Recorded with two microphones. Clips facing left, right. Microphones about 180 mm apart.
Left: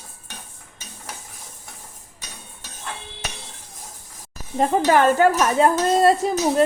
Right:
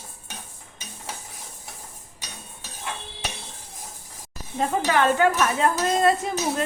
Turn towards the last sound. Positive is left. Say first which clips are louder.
# left 7 dB
turn(degrees=40)  # may be behind; listen again after turning